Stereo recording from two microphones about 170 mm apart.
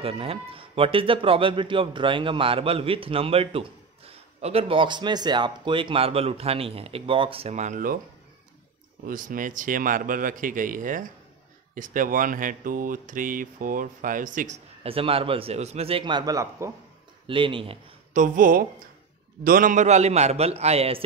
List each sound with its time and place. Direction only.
0.0 s speech: 35° right (ahead or behind); by 8.0 s 50° right (ahead or behind)
9.0 s speech: 55° right (ahead or behind)
14.8 s speech: 35° right (ahead or behind); by 16.7 s 15° right (ahead or behind)
17.3 s speech: 30° right (ahead or behind)
18.1 s speech: 50° right (ahead or behind)